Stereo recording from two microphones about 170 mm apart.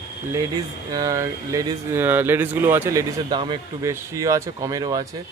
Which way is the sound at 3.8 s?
15° right (ahead or behind).